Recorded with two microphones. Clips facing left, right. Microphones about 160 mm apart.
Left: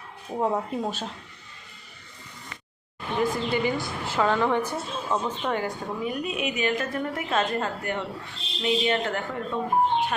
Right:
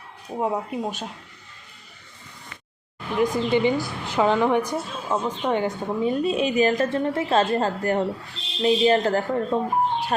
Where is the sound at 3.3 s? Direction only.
20° right (ahead or behind).